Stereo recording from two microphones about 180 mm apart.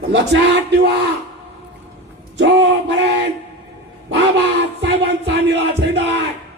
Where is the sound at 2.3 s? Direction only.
90° right.